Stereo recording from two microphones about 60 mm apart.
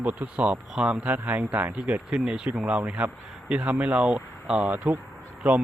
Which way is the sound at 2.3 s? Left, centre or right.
Centre.